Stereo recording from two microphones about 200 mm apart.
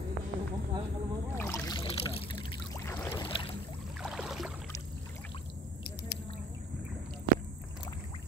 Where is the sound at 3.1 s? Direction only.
25° left (ahead or behind).